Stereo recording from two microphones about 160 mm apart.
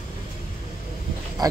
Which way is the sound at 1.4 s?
25° right (ahead or behind).